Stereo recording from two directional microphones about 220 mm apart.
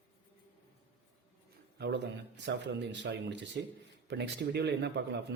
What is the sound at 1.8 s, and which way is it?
A man's voice, 50° right (ahead or behind).